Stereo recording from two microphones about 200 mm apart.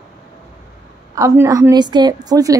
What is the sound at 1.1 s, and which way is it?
A woman's voice, 15° right (ahead or behind).